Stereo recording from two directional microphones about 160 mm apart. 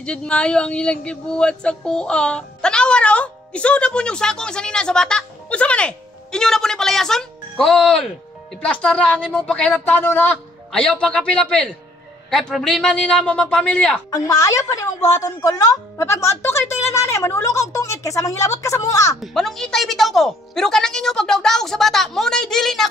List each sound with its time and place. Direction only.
0.0 s a woman's voice: 5° left (ahead or behind)
14.1 s a woman's voice: 20° left (ahead or behind)
19.2 s a woman's voice: centre (ahead or behind)